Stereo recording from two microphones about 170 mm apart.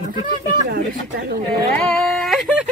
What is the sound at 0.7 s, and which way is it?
Speech, 70° right (ahead or behind).